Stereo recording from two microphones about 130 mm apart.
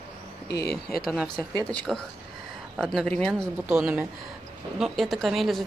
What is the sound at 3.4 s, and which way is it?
Speech, 20° right (ahead or behind).